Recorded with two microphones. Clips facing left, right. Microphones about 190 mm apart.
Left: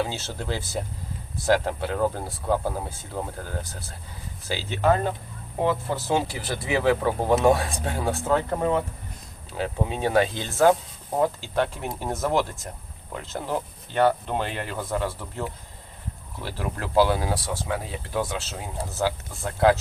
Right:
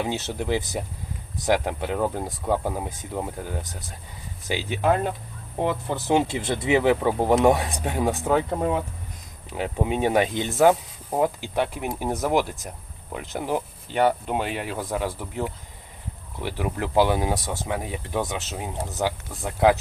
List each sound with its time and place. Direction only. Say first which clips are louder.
0.0 s speech: right 2 dB; 15° right (ahead or behind)